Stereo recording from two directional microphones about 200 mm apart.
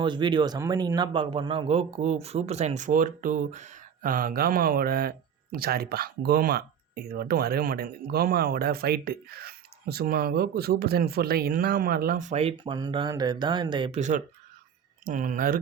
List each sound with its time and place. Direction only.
0.0 s speech: 20° right (ahead or behind)
15.0 s speech: 40° right (ahead or behind)